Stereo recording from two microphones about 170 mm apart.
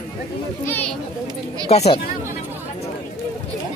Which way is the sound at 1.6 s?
40° left (ahead or behind).